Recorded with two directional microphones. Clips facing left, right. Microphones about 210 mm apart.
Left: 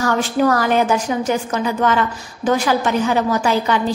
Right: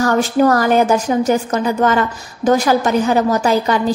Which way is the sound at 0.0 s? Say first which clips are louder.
Right 3 dB; 40° right (ahead or behind).